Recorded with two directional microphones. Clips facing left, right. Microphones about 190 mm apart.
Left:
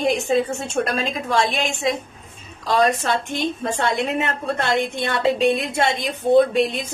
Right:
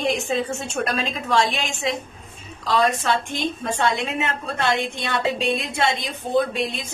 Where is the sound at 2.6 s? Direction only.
50° left (ahead or behind).